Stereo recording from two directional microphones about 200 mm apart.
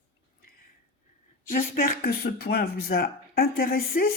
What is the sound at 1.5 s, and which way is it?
Speech, 45° left (ahead or behind).